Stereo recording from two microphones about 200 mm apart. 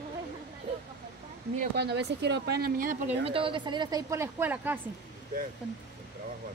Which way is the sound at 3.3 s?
25° right (ahead or behind).